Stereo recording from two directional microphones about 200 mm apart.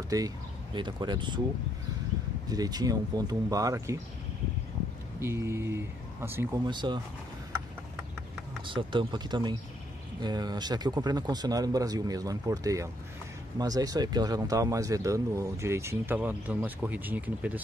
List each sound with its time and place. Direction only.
0.1 s speech: 15° right (ahead or behind)
2.4 s speech: 20° right (ahead or behind)
5.2 s speech: 15° right (ahead or behind)
8.6 s speech: 25° right (ahead or behind); by 17.6 s 10° right (ahead or behind)